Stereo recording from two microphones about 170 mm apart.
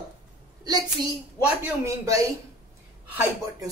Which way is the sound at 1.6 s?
20° right (ahead or behind).